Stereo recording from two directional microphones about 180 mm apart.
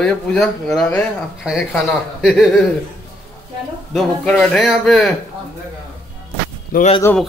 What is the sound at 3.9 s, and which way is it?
Speech, 5° left (ahead or behind).